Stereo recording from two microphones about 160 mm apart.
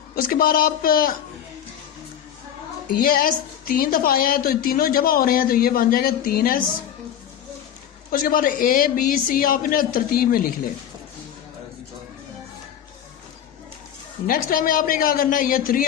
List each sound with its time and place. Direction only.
0.2 s a man's voice: 65° left (ahead or behind)
3.0 s a man's voice: 65° left (ahead or behind)
8.1 s a man's voice: 60° left (ahead or behind)
14.3 s a man's voice: 60° left (ahead or behind)